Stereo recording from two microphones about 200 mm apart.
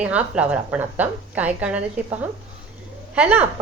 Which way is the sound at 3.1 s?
5° right (ahead or behind).